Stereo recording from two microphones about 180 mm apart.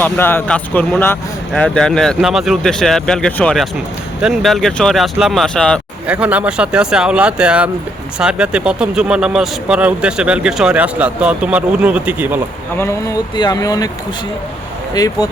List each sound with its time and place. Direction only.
0.0 s speech: 10° left (ahead or behind)
6.1 s speech: 5° right (ahead or behind)
12.7 s speech: 15° left (ahead or behind)
14.9 s speech: 20° left (ahead or behind)